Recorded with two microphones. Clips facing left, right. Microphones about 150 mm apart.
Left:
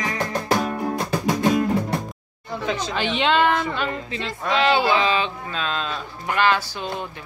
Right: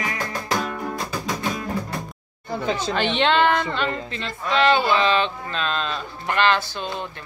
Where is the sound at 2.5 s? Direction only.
30° right (ahead or behind).